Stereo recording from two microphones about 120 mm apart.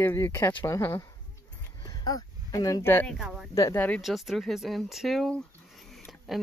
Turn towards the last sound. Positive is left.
turn(degrees=0)  # may be behind; listen again after turning